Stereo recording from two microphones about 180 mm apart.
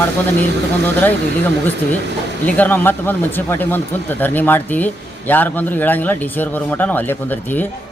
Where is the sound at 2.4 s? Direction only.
10° left (ahead or behind).